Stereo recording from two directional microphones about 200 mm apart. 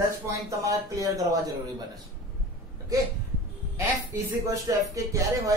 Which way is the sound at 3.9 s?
15° right (ahead or behind).